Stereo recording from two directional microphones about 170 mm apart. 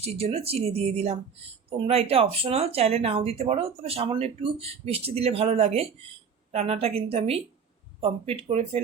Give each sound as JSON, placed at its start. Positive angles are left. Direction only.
{"t": 0.0, "sound": "speech", "side_deg": -35}